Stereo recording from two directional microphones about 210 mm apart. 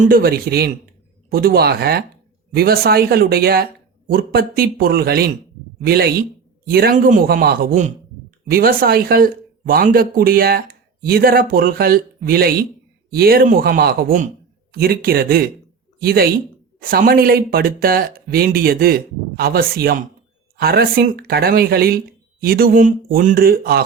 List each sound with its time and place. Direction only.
0.0 s speech: 45° right (ahead or behind)